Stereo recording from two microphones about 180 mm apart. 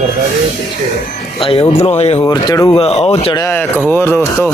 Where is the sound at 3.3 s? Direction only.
15° left (ahead or behind).